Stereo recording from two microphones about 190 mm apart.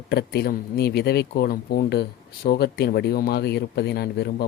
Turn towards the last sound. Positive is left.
turn(degrees=60)  # may be behind; listen again after turning